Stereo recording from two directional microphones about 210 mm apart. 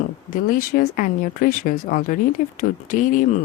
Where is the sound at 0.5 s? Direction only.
40° left (ahead or behind).